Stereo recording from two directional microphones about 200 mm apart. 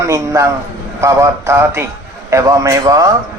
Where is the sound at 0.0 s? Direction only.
15° right (ahead or behind).